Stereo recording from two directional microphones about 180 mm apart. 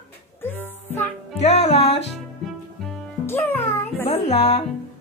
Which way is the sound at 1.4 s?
35° left (ahead or behind).